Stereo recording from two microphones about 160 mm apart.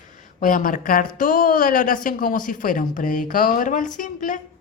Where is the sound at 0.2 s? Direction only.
55° left (ahead or behind).